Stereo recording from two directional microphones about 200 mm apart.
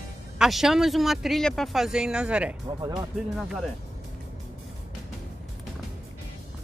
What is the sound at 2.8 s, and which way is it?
Speech, 20° right (ahead or behind).